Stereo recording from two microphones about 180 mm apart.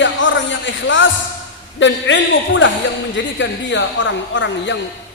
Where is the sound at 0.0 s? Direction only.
90° left.